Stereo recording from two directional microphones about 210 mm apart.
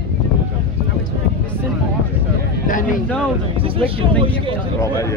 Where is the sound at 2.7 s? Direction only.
40° left (ahead or behind).